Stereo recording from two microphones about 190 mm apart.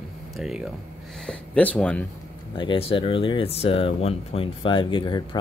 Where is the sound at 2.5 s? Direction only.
25° left (ahead or behind).